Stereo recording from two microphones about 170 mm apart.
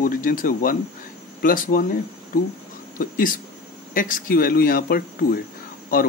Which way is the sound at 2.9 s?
55° left (ahead or behind).